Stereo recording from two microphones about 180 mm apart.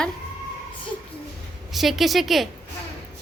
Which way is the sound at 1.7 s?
Centre (ahead or behind).